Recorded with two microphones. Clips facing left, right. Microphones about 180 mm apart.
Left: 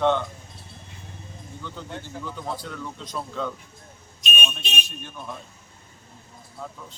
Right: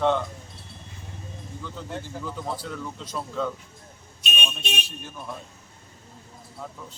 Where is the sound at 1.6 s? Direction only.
Centre (ahead or behind).